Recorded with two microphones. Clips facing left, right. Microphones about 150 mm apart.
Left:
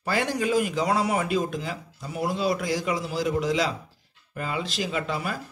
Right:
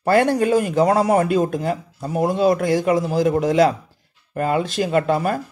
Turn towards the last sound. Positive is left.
turn(degrees=-55)  # may be behind; listen again after turning